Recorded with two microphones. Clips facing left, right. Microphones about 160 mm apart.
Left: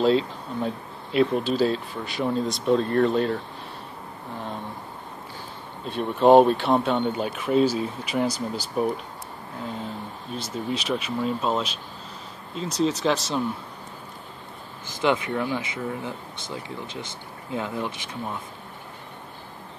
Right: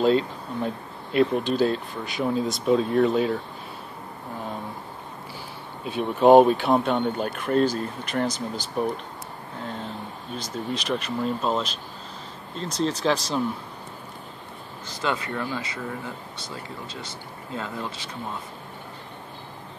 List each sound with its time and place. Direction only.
0.0 s speech: centre (ahead or behind)
5.9 s speech: 5° right (ahead or behind)
10.3 s speech: 5° left (ahead or behind)
15.0 s speech: 15° left (ahead or behind)